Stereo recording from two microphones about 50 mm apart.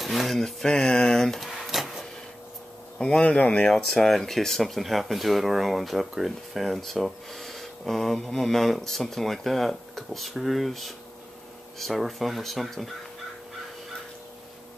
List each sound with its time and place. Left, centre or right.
0.0 s speech: centre
1.4 s drawer open or close: centre
3.0 s speech: centre
3.6 s speech: centre